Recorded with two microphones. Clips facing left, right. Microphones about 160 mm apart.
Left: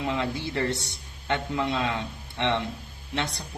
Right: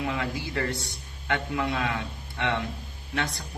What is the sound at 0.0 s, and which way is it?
Speech, 25° left (ahead or behind).